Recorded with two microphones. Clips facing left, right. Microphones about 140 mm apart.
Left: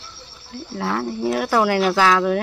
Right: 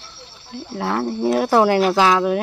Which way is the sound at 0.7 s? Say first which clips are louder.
Right 2 dB; 20° right (ahead or behind).